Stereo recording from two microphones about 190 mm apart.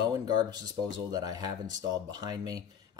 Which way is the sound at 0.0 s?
20° right (ahead or behind).